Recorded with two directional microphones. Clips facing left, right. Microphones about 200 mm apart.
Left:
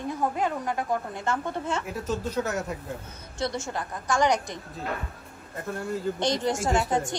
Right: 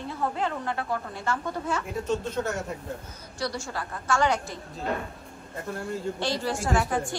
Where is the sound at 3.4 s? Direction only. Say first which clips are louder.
Left 2 dB; 20° left (ahead or behind).